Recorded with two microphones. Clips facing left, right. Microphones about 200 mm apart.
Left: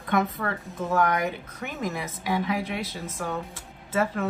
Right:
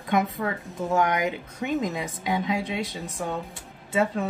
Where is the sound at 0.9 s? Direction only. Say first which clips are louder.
Right 1 dB; 15° right (ahead or behind).